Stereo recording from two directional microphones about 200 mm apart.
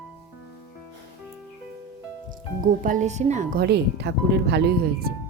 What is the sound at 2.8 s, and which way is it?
Speech, 40° right (ahead or behind).